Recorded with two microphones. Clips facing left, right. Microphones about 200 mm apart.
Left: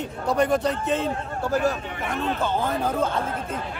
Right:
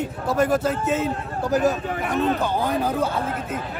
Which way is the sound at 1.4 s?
15° right (ahead or behind).